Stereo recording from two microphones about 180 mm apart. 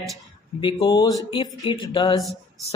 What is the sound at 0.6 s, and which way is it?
Speech, 25° left (ahead or behind).